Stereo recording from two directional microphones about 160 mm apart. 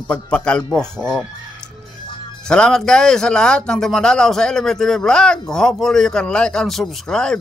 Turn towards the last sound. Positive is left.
turn(degrees=5)  # may be behind; listen again after turning